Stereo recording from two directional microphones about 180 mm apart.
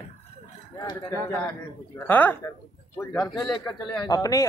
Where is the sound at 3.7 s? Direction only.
15° left (ahead or behind).